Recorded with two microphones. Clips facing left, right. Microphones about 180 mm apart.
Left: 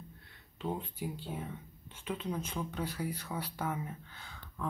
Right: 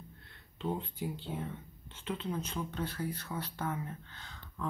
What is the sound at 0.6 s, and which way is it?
Speech, 10° left (ahead or behind).